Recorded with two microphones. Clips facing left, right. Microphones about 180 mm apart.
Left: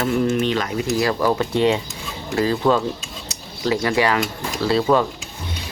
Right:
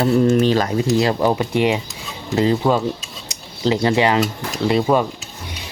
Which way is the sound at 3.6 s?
25° right (ahead or behind).